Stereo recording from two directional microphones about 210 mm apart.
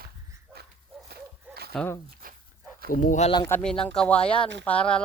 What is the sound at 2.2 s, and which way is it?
Dog, 45° right (ahead or behind).